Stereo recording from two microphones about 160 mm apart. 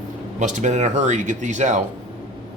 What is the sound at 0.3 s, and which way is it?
Speech, 50° right (ahead or behind).